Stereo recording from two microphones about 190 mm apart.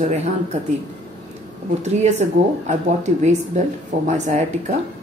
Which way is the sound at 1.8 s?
35° right (ahead or behind).